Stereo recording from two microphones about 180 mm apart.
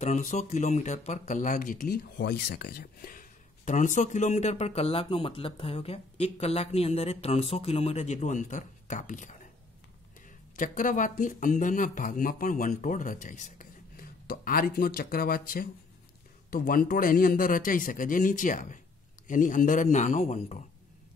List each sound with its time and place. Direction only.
0.0 s speech: 45° left (ahead or behind)
2.1 s speech: 70° left (ahead or behind); by 9.4 s 45° left (ahead or behind)
10.5 s speech: 45° left (ahead or behind)